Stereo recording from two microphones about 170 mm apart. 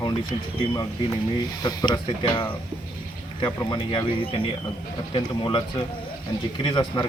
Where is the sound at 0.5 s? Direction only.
20° left (ahead or behind).